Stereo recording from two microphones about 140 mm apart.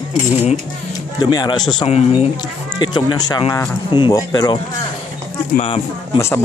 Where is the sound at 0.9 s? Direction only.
25° left (ahead or behind).